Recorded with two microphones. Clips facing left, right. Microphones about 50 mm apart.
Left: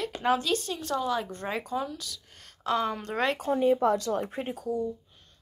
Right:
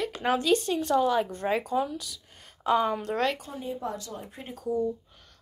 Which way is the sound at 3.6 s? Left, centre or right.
Left.